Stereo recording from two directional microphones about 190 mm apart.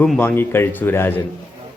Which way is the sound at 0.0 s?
10° left (ahead or behind).